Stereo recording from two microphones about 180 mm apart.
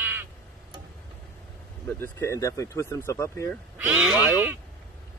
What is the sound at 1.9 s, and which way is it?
Speech, 15° left (ahead or behind).